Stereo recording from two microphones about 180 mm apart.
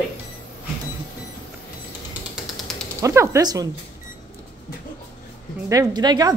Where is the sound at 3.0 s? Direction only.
15° right (ahead or behind).